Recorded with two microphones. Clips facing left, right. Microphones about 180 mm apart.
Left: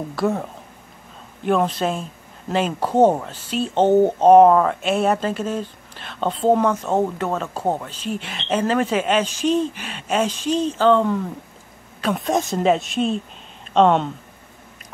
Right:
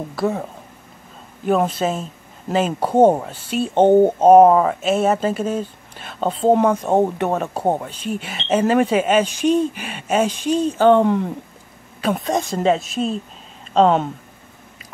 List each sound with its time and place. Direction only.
0.1 s a woman's voice: centre (ahead or behind); by 7.9 s 15° right (ahead or behind)
8.1 s speech: 5° right (ahead or behind)
9.2 s speech: 55° right (ahead or behind)
9.5 s speech: 10° right (ahead or behind)
12.0 s a woman's voice: centre (ahead or behind)